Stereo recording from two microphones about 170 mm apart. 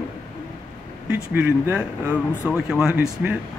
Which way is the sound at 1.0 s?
10° right (ahead or behind).